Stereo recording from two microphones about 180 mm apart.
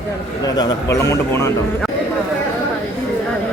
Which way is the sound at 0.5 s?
20° left (ahead or behind).